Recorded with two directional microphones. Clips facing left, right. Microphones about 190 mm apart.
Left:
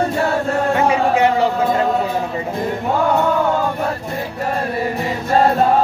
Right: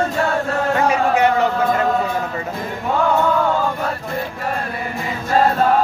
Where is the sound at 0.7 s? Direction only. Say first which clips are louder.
Even; 25° left (ahead or behind).